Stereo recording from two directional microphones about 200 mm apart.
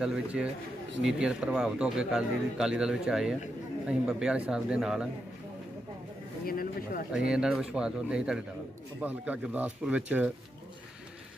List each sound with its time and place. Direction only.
0.0 s speech: 5° right (ahead or behind)
6.4 s speech: 45° left (ahead or behind)
7.2 s speech: 5° right (ahead or behind)